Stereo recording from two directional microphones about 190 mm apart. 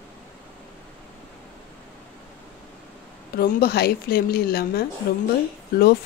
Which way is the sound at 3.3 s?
55° left (ahead or behind).